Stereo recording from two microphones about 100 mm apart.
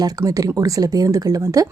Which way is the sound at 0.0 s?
35° right (ahead or behind).